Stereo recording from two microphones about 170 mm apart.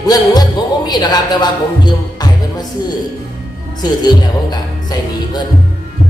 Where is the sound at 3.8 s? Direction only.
25° left (ahead or behind).